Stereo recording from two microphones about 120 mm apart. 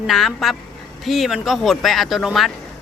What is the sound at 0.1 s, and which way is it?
Speech, centre (ahead or behind).